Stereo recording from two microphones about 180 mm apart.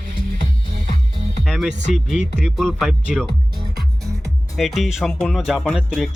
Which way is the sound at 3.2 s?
25° right (ahead or behind).